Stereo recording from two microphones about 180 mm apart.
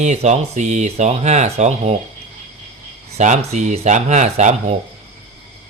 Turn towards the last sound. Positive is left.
turn(degrees=-40)  # may be behind; listen again after turning